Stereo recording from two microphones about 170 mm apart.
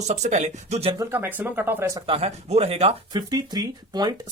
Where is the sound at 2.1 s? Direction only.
35° right (ahead or behind).